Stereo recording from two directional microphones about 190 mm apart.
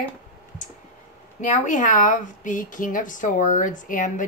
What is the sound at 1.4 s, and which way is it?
A woman's voice, 40° left (ahead or behind).